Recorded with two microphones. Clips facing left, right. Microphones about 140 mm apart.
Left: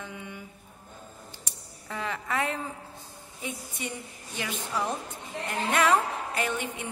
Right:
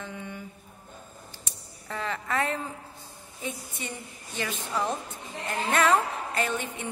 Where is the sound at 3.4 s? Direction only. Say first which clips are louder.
Even; 15° left (ahead or behind).